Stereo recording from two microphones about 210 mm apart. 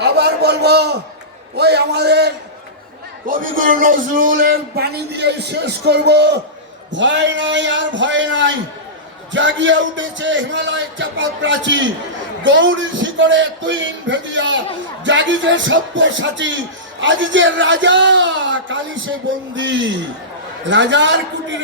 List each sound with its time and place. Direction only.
0.0 s a sound: 50° right (ahead or behind)
1.5 s speech: 50° right (ahead or behind)
3.2 s a man's voice: 40° right (ahead or behind); by 21.6 s 60° right (ahead or behind)